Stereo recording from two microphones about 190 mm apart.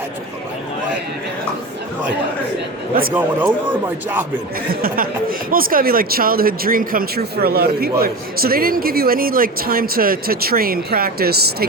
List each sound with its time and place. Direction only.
3.2 s a man's voice: 10° right (ahead or behind)
4.7 s speech: 50° right (ahead or behind)